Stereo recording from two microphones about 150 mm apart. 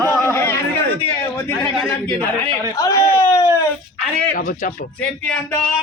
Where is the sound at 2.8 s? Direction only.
20° left (ahead or behind).